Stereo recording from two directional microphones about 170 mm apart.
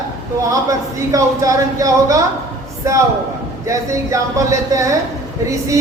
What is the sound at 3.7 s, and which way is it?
Speech, 20° right (ahead or behind).